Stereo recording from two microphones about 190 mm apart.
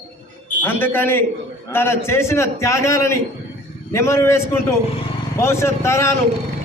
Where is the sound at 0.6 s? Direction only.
10° left (ahead or behind).